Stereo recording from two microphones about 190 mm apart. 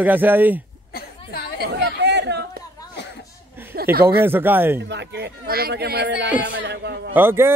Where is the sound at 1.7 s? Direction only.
65° right (ahead or behind).